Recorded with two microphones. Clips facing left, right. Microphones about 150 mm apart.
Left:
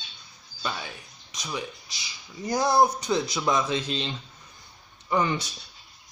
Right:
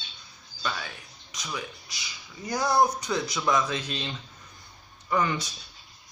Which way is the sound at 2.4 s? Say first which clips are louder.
Left 2 dB; 25° left (ahead or behind).